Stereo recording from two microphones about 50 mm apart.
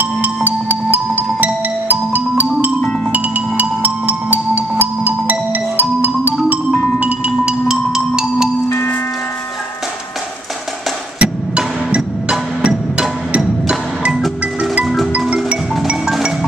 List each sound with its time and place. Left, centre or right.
0.0 s music: right
7.2 s music: centre
11.1 s wood block: right